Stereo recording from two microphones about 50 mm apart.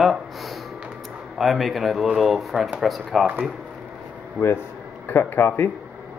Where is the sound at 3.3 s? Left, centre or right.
Right.